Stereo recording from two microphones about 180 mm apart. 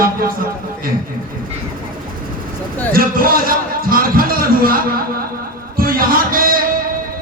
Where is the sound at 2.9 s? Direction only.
55° right (ahead or behind).